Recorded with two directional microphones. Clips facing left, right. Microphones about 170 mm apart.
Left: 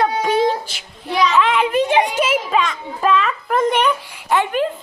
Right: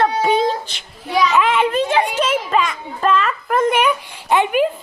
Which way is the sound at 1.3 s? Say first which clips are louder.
Right 1 dB; centre (ahead or behind).